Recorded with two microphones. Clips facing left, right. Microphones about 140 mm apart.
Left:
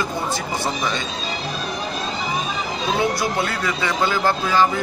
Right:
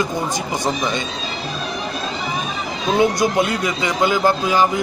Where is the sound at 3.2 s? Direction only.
20° right (ahead or behind).